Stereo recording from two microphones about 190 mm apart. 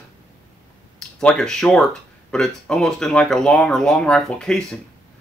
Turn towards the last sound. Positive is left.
turn(degrees=5)  # may be behind; listen again after turning